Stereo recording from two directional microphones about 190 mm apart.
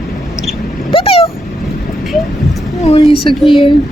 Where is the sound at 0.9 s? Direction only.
30° left (ahead or behind).